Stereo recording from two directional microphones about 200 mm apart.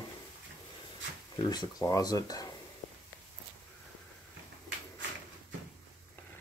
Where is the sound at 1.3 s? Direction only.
20° left (ahead or behind).